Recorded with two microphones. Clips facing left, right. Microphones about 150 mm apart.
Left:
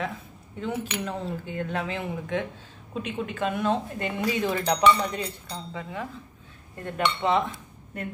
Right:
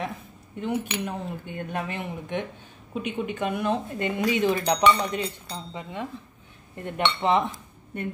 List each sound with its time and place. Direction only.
0.7 s speech: 15° right (ahead or behind)